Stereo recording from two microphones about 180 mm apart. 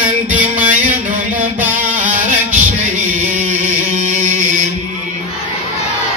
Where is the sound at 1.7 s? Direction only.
45° right (ahead or behind).